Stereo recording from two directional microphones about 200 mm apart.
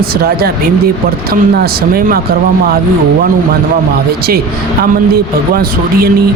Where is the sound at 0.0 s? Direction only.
50° right (ahead or behind).